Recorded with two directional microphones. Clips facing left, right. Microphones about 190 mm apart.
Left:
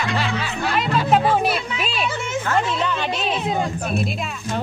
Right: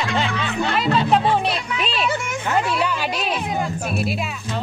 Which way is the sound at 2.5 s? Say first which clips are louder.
Right 2 dB; 10° right (ahead or behind).